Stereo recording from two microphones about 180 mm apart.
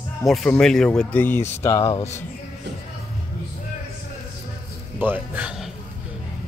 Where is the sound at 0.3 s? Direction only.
5° left (ahead or behind).